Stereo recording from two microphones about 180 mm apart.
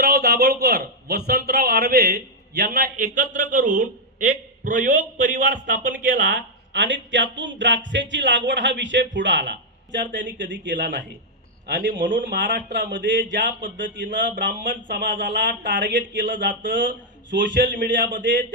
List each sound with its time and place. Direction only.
0.0 s speech: 60° right (ahead or behind)
2.6 s a man's voice: 50° right (ahead or behind)
6.2 s a man's voice: 90° right
11.6 s a man's voice: 50° right (ahead or behind)
12.2 s speech: 80° right
14.6 s a man's voice: 50° right (ahead or behind)
15.4 s speech: 80° right
16.5 s a man's voice: 50° right (ahead or behind)
17.3 s speech: 80° right
17.6 s a man's voice: 50° right (ahead or behind)